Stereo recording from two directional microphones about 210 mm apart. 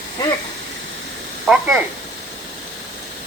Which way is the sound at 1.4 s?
Centre (ahead or behind).